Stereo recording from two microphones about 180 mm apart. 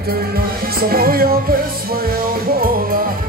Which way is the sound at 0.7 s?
55° right (ahead or behind).